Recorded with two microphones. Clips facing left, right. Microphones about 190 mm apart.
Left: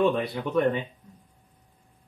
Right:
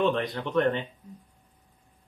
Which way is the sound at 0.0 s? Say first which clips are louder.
Left 2 dB; 10° left (ahead or behind).